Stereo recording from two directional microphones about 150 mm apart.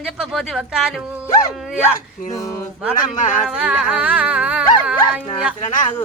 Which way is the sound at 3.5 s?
5° right (ahead or behind).